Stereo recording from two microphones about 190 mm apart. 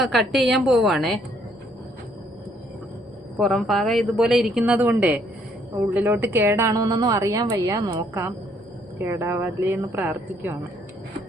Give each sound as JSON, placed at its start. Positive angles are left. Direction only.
{"t": 0.0, "sound": "a woman's voice", "side_deg": 0}
{"t": 3.3, "sound": "a woman's voice", "side_deg": 0}